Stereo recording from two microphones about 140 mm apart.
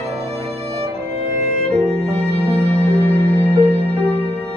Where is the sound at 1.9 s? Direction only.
45° right (ahead or behind).